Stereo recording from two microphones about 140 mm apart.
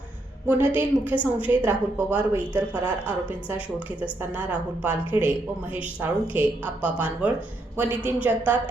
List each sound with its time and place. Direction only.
0.4 s a woman's voice: 15° right (ahead or behind)